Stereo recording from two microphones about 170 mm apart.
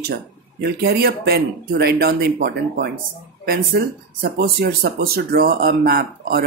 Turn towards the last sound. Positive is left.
turn(degrees=-65)  # may be behind; listen again after turning